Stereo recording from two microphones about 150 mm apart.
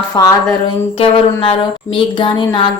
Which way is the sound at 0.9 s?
35° left (ahead or behind).